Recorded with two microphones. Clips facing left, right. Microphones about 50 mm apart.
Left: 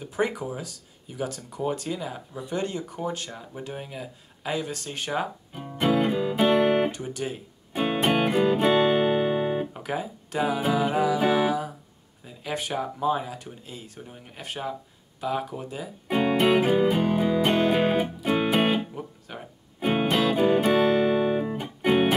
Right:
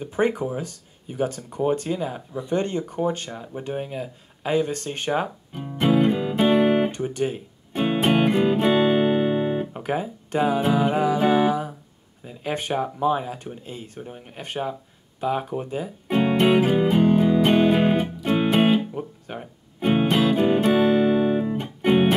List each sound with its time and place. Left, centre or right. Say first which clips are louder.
0.0 s speech: right 5 dB; right
2.4 s speech: right 5 dB; right
3.3 s speech: right 5 dB; centre
4.5 s speech: right 7 dB; right
5.5 s music: right 3 dB; centre
9.8 s speech: right 4 dB; right
12.7 s speech: right 3 dB; centre
16.1 s music: right 2 dB; centre
18.9 s guitar: right 5 dB; centre
19.8 s music: right 3 dB; centre